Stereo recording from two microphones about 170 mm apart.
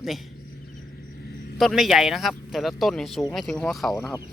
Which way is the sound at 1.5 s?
Centre (ahead or behind).